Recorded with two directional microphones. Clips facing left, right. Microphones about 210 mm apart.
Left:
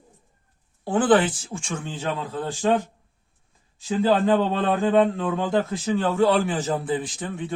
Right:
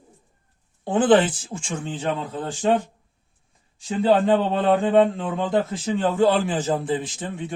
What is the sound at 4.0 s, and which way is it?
A man's voice, 20° right (ahead or behind).